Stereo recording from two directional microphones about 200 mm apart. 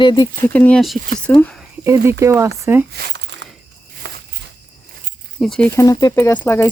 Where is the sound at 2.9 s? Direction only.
60° right (ahead or behind).